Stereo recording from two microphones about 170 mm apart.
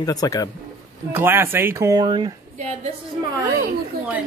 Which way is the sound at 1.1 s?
15° right (ahead or behind).